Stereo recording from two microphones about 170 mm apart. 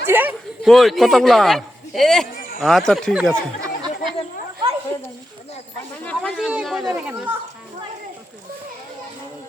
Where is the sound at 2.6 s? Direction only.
Centre (ahead or behind).